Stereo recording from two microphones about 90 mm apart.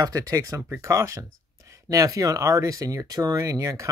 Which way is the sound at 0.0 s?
40° right (ahead or behind).